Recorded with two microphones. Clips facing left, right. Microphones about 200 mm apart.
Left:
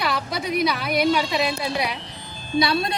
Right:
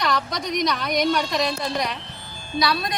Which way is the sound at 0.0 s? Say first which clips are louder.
Right 1 dB; 5° left (ahead or behind).